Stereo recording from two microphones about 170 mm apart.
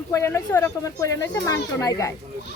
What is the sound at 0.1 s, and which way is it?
A woman's voice, 15° left (ahead or behind).